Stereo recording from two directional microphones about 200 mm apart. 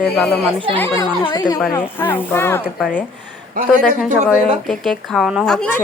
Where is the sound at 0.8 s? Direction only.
15° left (ahead or behind).